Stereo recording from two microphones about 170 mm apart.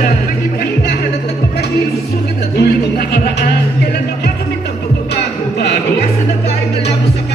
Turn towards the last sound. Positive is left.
turn(degrees=75)  # may be behind; listen again after turning